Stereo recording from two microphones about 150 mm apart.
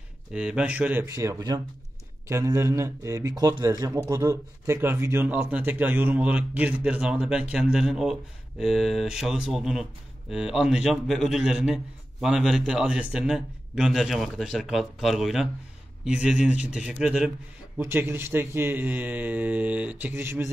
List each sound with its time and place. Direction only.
0.3 s speech: 5° right (ahead or behind)
1.0 s a man's voice: 20° right (ahead or behind); by 17.3 s 5° right (ahead or behind)
17.7 s speech: 15° right (ahead or behind)